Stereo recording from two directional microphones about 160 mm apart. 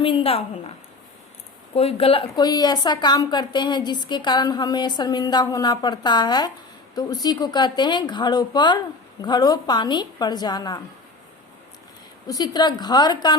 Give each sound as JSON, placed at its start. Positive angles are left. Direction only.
{"t": 0.0, "sound": "a woman's voice", "side_deg": 35}
{"t": 1.7, "sound": "a woman's voice", "side_deg": 40}
{"t": 12.3, "sound": "a woman's voice", "side_deg": 25}